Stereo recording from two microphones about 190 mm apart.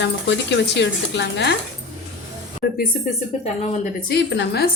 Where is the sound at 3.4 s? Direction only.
35° left (ahead or behind).